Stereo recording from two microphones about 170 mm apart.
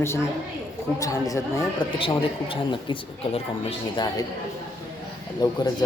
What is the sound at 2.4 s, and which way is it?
Speech, 30° left (ahead or behind).